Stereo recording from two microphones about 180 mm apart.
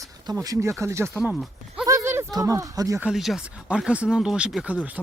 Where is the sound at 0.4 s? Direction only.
15° right (ahead or behind).